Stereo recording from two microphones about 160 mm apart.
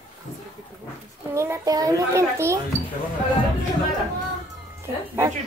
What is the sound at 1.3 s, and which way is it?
A child's voice, 15° right (ahead or behind).